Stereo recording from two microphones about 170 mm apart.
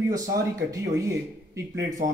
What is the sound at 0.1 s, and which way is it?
Speech, 20° right (ahead or behind).